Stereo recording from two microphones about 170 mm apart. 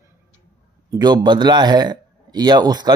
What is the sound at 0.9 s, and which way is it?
Speech, 25° right (ahead or behind).